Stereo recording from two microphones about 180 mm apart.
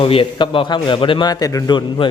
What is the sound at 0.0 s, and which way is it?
A man's voice, 30° left (ahead or behind).